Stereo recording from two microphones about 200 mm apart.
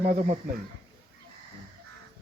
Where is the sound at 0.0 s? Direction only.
40° right (ahead or behind).